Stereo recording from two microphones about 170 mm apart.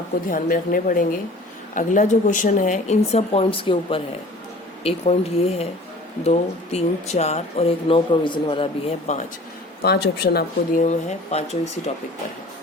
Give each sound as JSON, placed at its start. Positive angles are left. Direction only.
{"t": 0.3, "sound": "speech", "side_deg": 55}
{"t": 9.1, "sound": "speech", "side_deg": 40}
{"t": 9.8, "sound": "speech", "side_deg": 70}
{"t": 10.8, "sound": "speech", "side_deg": 45}